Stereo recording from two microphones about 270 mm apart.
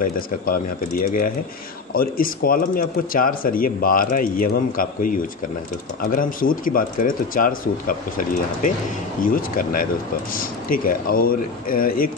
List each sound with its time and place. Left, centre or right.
0.0 s speech: left
9.2 s speech: left